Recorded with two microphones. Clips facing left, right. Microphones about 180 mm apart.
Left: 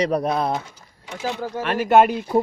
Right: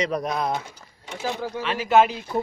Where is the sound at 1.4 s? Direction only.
50° left (ahead or behind).